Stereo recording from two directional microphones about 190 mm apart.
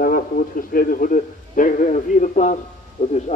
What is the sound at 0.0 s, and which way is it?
A man's voice, 50° left (ahead or behind).